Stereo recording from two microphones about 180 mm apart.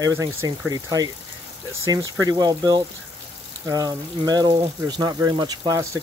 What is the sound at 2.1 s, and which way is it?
Speech, 20° right (ahead or behind).